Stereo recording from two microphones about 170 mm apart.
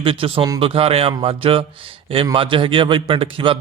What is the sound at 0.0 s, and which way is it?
A man's voice, 30° right (ahead or behind).